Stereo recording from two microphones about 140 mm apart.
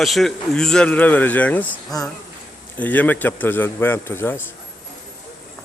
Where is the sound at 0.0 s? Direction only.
Centre (ahead or behind); by 4.4 s 15° left (ahead or behind).